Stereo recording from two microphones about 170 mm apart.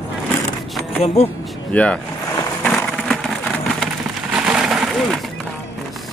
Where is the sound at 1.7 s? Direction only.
10° left (ahead or behind).